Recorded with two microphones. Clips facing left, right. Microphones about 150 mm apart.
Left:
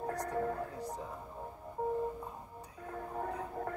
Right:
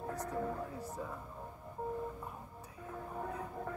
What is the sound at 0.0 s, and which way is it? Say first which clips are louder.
Music: left 3 dB; 65° left (ahead or behind).